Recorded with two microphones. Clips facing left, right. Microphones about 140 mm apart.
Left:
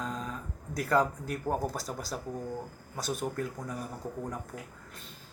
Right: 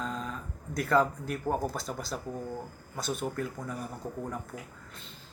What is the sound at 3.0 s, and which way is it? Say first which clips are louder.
Speech: even; 40° left (ahead or behind).